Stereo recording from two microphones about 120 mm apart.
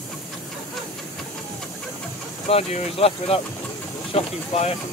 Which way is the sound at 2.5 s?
55° left (ahead or behind).